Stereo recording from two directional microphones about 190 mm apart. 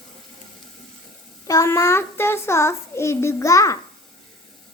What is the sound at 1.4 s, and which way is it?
A child's voice, 15° left (ahead or behind).